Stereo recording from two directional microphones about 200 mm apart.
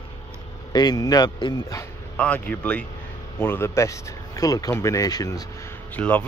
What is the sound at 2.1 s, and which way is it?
Speech, 5° left (ahead or behind).